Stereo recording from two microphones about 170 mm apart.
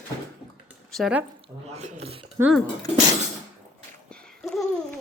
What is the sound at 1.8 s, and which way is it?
Speech, 40° right (ahead or behind).